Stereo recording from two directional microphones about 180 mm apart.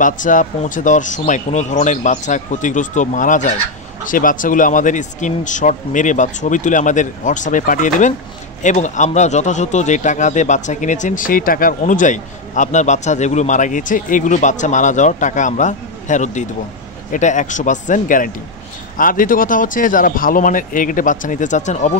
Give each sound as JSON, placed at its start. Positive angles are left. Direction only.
{"t": 0.0, "sound": "a man's voice", "side_deg": 45}